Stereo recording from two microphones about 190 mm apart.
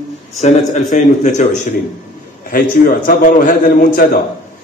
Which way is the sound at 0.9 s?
40° left (ahead or behind).